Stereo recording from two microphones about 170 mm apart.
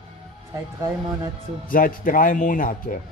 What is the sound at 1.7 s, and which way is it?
Speech, 55° left (ahead or behind).